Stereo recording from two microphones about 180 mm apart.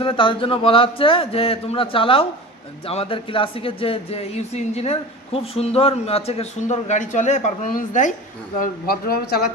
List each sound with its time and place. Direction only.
0.0 s a man's voice: 30° left (ahead or behind); by 9.5 s 60° left (ahead or behind)